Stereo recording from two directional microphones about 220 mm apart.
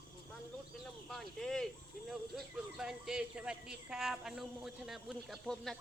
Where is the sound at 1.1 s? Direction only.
Centre (ahead or behind).